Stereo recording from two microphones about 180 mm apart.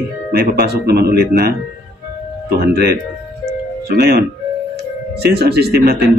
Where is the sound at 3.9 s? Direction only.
60° right (ahead or behind).